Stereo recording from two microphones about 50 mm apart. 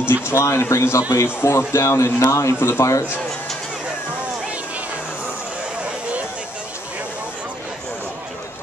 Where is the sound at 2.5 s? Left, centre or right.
Left.